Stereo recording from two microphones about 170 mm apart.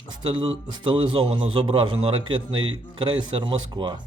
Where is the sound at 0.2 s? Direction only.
25° right (ahead or behind).